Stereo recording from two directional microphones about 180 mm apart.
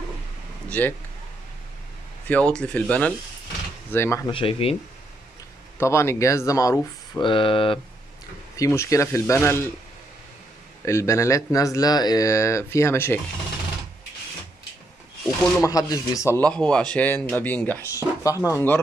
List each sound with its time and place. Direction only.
0.7 s speech: 10° left (ahead or behind)
2.2 s speech: 5° left (ahead or behind)
4.3 s speech: 30° left (ahead or behind)
5.8 s speech: 15° left (ahead or behind)
8.5 s speech: 15° left (ahead or behind)
10.9 s speech: 15° left (ahead or behind)
15.6 s speech: 20° left (ahead or behind)